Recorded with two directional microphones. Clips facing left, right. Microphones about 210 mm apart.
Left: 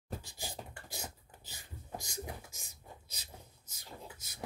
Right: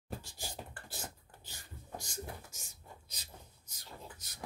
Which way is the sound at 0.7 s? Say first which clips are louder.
Left 1 dB; 10° left (ahead or behind).